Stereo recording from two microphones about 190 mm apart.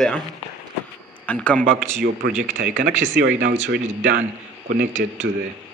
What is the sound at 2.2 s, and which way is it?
Speech, 70° right (ahead or behind).